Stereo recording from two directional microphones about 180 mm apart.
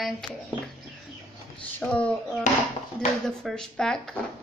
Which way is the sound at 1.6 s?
5° left (ahead or behind).